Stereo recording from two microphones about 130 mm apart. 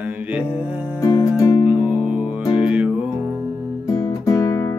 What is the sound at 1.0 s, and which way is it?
Music, 25° left (ahead or behind).